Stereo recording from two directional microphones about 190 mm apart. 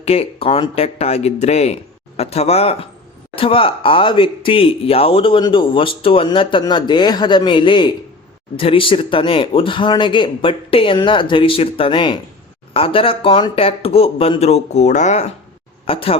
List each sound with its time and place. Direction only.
0.0 s speech: 30° left (ahead or behind)